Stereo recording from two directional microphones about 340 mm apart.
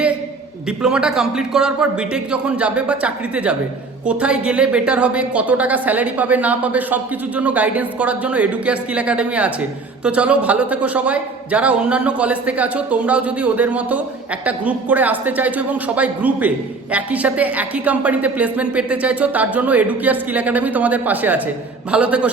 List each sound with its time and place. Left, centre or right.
0.8 s a woman's voice: centre